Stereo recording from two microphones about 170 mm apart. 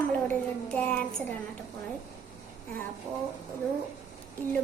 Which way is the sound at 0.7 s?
5° left (ahead or behind).